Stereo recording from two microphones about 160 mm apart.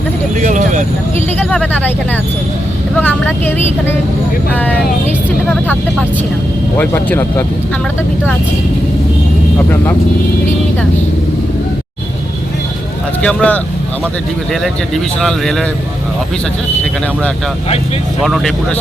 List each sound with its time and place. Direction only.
0.3 s speech: 50° right (ahead or behind)
1.4 s speech: 10° left (ahead or behind)
2.9 s speech: 10° left (ahead or behind)
4.5 s speech: 10° left (ahead or behind)
6.7 s speech: 10° left (ahead or behind)
13.2 s speech: 5° left (ahead or behind)
18.2 s speech: centre (ahead or behind)